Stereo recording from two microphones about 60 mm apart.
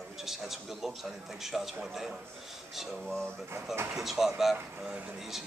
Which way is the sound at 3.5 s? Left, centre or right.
Right.